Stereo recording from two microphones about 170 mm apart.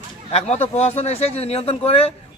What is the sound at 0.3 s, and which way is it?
Speech, 40° left (ahead or behind).